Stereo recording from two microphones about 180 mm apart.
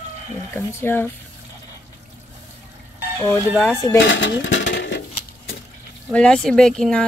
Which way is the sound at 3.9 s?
90° left.